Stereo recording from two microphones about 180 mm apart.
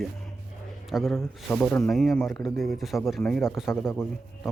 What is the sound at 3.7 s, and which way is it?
Speech, 15° left (ahead or behind).